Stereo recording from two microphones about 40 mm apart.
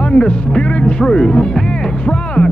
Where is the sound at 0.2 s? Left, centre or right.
Centre.